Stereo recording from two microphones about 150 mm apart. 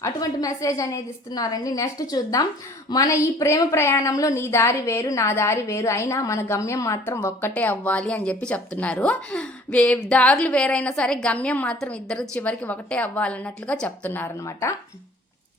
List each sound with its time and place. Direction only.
0.0 s a woman's voice: 20° left (ahead or behind)